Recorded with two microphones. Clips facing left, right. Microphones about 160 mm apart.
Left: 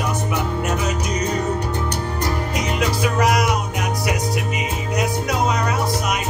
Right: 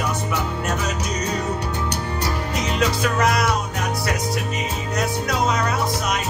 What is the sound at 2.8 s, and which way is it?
Music, 10° left (ahead or behind).